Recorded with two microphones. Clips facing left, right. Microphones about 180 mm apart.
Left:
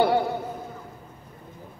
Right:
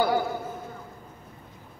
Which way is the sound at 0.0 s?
30° left (ahead or behind).